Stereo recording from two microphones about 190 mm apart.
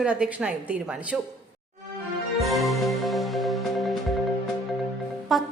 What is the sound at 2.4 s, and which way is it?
Music, centre (ahead or behind).